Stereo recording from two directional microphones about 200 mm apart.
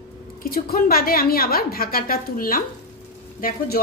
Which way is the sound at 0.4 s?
45° left (ahead or behind).